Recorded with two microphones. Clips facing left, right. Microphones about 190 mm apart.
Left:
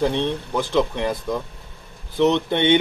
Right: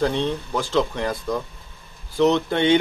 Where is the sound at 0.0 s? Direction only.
15° left (ahead or behind).